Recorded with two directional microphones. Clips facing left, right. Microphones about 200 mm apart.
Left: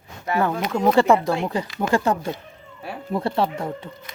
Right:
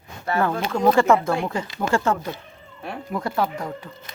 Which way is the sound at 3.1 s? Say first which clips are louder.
Left 2 dB; 30° left (ahead or behind).